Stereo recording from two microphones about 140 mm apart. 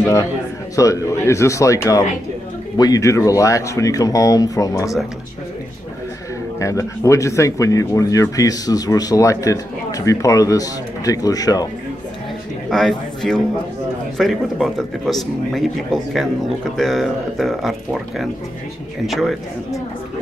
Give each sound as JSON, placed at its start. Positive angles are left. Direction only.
{"t": 0.7, "sound": "speech", "side_deg": 25}
{"t": 6.6, "sound": "speech", "side_deg": 20}
{"t": 12.6, "sound": "a man's voice", "side_deg": 5}